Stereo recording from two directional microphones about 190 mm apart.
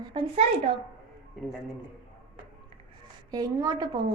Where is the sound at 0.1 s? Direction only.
25° right (ahead or behind).